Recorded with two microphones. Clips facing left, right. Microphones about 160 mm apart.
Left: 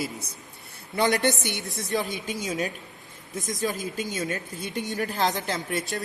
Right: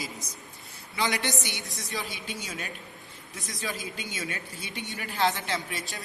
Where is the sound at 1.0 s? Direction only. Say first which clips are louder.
Left 7 dB; 50° left (ahead or behind).